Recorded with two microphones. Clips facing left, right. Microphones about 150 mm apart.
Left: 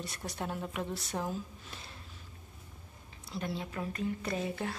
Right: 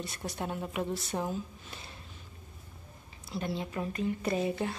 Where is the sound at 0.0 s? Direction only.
Centre (ahead or behind).